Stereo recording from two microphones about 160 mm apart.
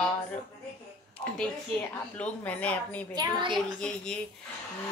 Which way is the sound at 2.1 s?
10° left (ahead or behind).